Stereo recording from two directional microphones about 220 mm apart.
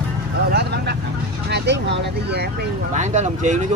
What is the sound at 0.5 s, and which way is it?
Vehicle, 50° right (ahead or behind).